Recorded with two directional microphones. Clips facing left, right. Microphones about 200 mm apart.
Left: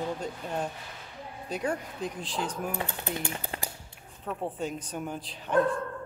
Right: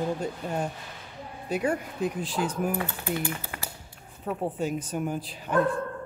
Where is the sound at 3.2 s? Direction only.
25° left (ahead or behind).